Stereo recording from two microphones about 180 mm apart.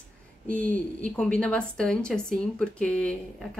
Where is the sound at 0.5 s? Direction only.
5° left (ahead or behind).